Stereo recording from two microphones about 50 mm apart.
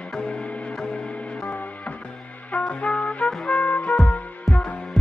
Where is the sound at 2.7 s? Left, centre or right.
Left.